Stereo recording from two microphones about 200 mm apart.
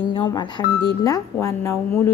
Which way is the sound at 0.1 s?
25° left (ahead or behind).